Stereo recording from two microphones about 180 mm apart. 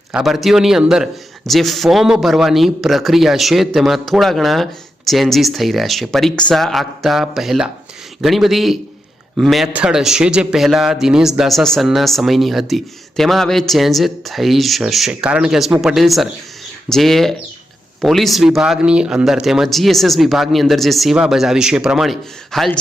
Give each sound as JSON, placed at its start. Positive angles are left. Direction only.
{"t": 0.1, "sound": "a man's voice", "side_deg": 0}